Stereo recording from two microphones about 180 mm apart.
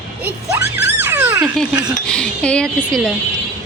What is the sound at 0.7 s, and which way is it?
Music, 10° right (ahead or behind).